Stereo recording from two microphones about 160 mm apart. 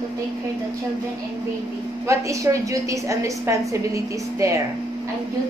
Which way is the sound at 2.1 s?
20° right (ahead or behind).